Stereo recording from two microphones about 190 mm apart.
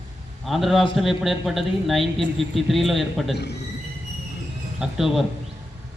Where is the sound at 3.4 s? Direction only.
60° left (ahead or behind).